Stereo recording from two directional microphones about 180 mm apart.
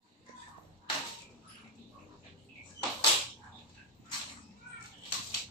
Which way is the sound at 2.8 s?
15° left (ahead or behind).